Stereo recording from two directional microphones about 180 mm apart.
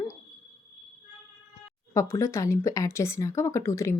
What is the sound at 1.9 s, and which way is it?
Speech, 15° left (ahead or behind).